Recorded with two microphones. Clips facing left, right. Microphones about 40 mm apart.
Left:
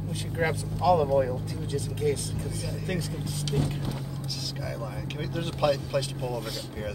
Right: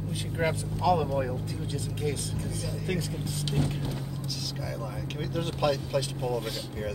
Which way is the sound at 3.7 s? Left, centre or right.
Centre.